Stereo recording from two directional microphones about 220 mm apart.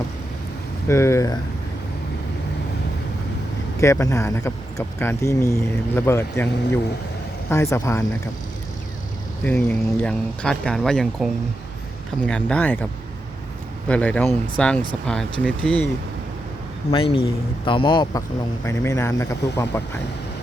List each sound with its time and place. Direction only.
0.9 s speech: 10° left (ahead or behind)
3.8 s speech: 15° left (ahead or behind)
7.5 s speech: 15° left (ahead or behind)
9.4 s speech: 5° left (ahead or behind)
16.9 s speech: 25° left (ahead or behind)